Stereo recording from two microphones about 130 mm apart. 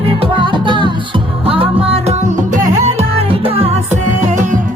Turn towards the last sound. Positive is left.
turn(degrees=-45)  # may be behind; listen again after turning